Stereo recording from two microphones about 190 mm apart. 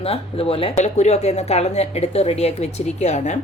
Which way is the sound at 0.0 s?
30° left (ahead or behind).